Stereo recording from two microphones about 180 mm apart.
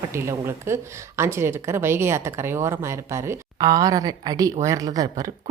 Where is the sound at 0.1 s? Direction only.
15° right (ahead or behind).